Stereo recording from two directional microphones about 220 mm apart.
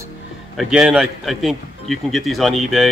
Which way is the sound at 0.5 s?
Centre (ahead or behind).